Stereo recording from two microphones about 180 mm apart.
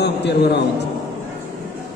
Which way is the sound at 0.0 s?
70° left (ahead or behind).